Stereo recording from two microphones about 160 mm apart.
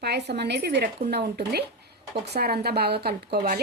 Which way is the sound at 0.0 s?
90° right.